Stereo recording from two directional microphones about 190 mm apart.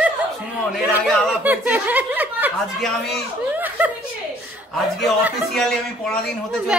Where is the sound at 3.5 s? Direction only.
10° right (ahead or behind).